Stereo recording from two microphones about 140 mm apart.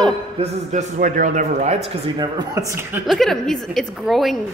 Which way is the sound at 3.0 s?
Centre (ahead or behind).